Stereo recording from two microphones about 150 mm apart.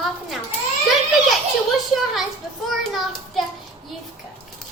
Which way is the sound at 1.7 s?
Centre (ahead or behind).